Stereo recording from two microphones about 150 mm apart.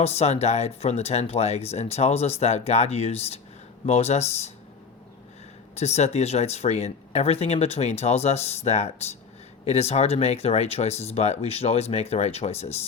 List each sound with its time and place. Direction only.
0.0 s speech: 45° left (ahead or behind)
5.7 s speech: 45° left (ahead or behind)